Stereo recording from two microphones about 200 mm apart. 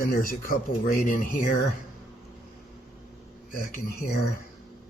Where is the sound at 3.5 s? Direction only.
45° left (ahead or behind).